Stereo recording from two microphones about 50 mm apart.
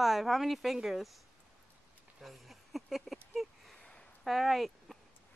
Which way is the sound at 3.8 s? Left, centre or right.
Centre.